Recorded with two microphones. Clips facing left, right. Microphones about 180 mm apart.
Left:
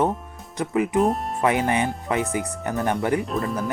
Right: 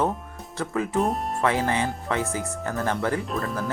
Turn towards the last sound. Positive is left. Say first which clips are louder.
# left 3 dB
turn(degrees=0)  # may be behind; listen again after turning